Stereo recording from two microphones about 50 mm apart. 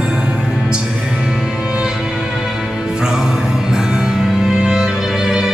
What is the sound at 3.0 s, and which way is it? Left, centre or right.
Music, centre.